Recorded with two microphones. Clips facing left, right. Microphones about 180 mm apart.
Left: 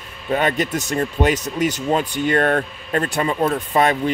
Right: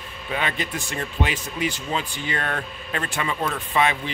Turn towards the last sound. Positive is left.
turn(degrees=45)  # may be behind; listen again after turning